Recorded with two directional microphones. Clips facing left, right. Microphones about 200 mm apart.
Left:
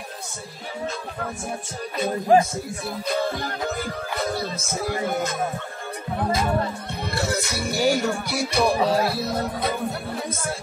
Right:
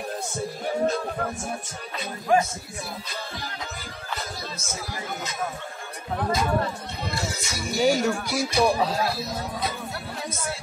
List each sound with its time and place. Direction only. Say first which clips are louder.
2.3 s speech: left 4 dB; 35° left (ahead or behind)
3.1 s speech: left 11 dB; 55° left (ahead or behind)
7.2 s speech: left 6 dB; 60° left (ahead or behind)